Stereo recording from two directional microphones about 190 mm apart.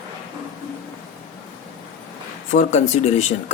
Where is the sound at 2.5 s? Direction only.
35° left (ahead or behind).